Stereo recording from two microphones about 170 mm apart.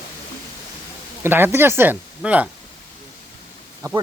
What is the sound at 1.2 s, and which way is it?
Speech, 10° right (ahead or behind).